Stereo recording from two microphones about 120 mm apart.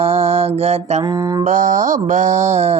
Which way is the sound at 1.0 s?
35° right (ahead or behind).